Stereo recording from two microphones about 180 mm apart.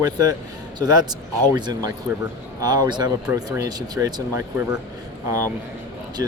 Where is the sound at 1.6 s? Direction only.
20° right (ahead or behind).